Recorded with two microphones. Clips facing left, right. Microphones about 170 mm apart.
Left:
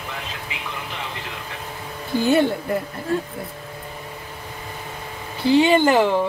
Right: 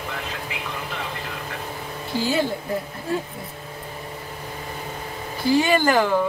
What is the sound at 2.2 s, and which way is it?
Speech, 60° left (ahead or behind).